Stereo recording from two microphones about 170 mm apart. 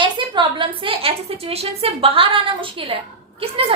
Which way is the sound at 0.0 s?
30° right (ahead or behind).